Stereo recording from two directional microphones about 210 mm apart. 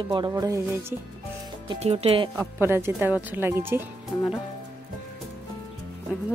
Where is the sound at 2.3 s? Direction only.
10° right (ahead or behind).